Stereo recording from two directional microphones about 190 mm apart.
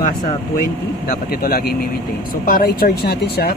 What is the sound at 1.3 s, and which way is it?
Speech, 50° left (ahead or behind).